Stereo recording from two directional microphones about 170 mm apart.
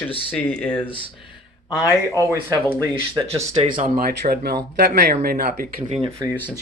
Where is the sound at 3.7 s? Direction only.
60° right (ahead or behind).